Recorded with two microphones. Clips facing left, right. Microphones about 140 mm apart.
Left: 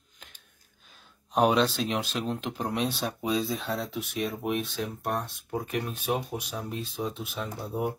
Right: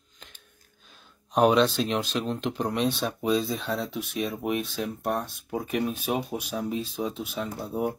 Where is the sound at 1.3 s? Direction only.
Centre (ahead or behind).